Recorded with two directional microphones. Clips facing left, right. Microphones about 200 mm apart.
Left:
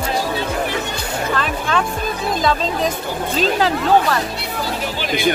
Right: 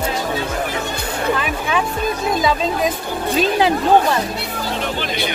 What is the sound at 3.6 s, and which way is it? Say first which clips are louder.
Speech: right 2 dB; 20° right (ahead or behind).